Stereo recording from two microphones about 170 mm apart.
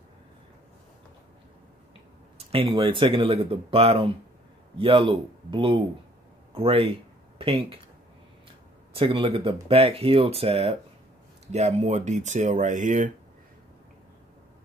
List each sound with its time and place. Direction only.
2.3 s speech: 35° right (ahead or behind)
8.9 s speech: 30° right (ahead or behind); by 13.1 s 50° right (ahead or behind)